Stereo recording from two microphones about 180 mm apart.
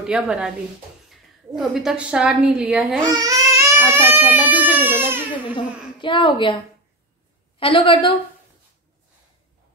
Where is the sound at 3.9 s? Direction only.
10° right (ahead or behind).